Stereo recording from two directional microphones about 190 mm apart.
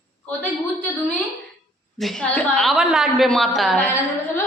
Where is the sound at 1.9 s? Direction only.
Centre (ahead or behind).